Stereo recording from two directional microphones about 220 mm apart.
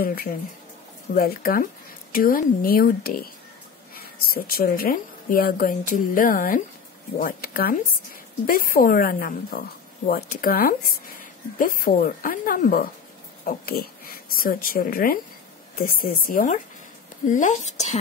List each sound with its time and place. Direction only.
0.0 s a woman's voice: 40° left (ahead or behind)